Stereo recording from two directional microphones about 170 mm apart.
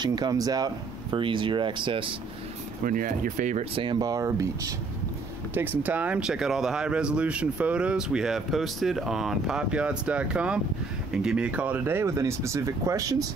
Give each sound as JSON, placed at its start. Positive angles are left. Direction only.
{"t": 0.0, "sound": "speech", "side_deg": -25}
{"t": 2.8, "sound": "speech", "side_deg": -55}
{"t": 3.7, "sound": "speech", "side_deg": -25}